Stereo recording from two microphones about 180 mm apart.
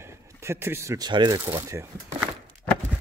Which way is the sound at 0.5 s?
15° right (ahead or behind).